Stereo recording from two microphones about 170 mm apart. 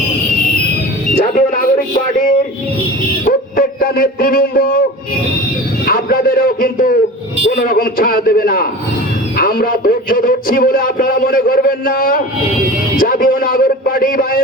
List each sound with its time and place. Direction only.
1.1 s music: 55° left (ahead or behind)
3.2 s dog: 60° left (ahead or behind)
5.8 s a man's voice: 55° left (ahead or behind)